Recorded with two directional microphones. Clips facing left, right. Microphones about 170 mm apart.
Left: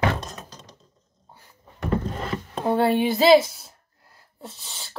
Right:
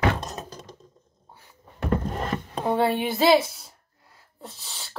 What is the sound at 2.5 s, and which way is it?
Speech, centre (ahead or behind).